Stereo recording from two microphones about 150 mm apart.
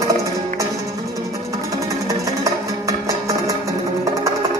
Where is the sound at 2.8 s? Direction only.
20° right (ahead or behind).